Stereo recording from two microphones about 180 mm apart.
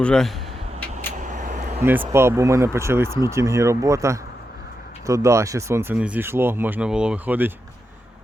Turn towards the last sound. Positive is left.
turn(degrees=-10)  # may be behind; listen again after turning